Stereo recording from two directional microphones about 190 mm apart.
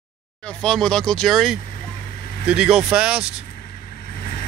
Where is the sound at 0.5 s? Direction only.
5° left (ahead or behind).